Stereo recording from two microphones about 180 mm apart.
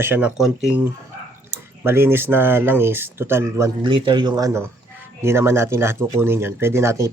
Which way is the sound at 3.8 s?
25° right (ahead or behind).